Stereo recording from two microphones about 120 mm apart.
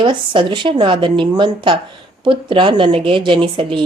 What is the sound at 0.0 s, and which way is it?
Speech, 45° right (ahead or behind).